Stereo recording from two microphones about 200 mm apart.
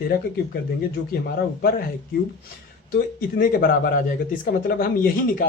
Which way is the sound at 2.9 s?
45° left (ahead or behind).